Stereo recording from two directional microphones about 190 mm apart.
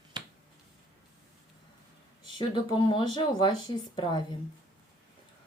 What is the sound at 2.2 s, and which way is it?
Speech, 25° left (ahead or behind).